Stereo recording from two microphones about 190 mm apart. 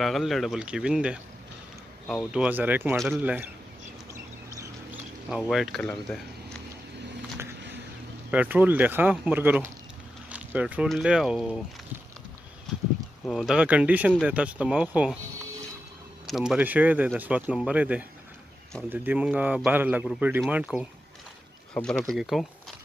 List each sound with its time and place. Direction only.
0.0 s speech: centre (ahead or behind)
4.1 s a sound: 15° right (ahead or behind)
5.5 s speech: centre (ahead or behind)
8.3 s speech: 10° right (ahead or behind)
13.3 s speech: centre (ahead or behind)
16.3 s speech: centre (ahead or behind)